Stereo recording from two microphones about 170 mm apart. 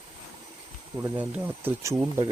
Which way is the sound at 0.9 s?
10° right (ahead or behind).